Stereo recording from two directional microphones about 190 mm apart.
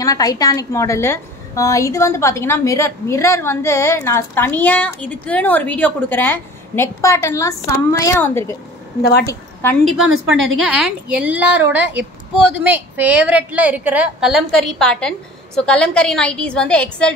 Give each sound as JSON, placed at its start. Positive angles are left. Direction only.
{"t": 0.0, "sound": "a woman's voice", "side_deg": 20}
{"t": 9.8, "sound": "a woman's voice", "side_deg": -90}
{"t": 10.6, "sound": "a woman's voice", "side_deg": -5}